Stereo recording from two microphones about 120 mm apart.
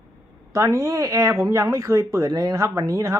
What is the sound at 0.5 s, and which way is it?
Speech, 25° right (ahead or behind).